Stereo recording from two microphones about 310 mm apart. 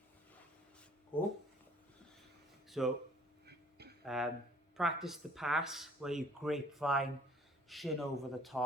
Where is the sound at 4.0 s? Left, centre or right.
Centre.